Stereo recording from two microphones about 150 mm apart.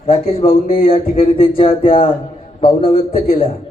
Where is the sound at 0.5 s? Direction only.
70° left (ahead or behind).